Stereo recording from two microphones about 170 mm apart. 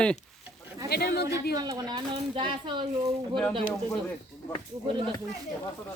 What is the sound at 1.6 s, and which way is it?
Speech, 25° right (ahead or behind).